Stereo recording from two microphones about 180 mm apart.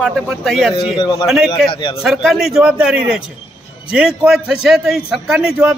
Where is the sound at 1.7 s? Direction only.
30° left (ahead or behind).